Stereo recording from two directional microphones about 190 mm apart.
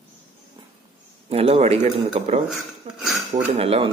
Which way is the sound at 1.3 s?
30° right (ahead or behind).